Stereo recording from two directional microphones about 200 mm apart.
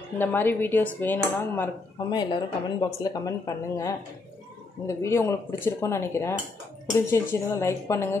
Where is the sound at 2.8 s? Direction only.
20° left (ahead or behind).